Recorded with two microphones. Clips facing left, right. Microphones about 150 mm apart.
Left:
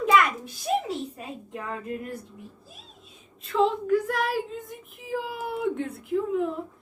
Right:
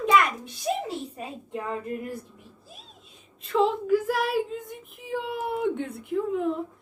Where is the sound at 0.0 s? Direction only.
Centre (ahead or behind).